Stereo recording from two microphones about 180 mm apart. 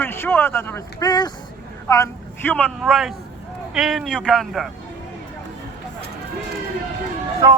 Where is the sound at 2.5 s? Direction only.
5° left (ahead or behind).